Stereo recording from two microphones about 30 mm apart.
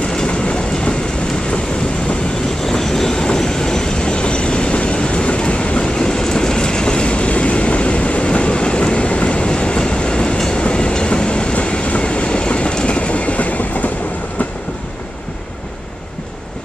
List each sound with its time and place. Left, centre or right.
0.3 s train: left
2.6 s train: centre; by 5.9 s left
5.9 s train: left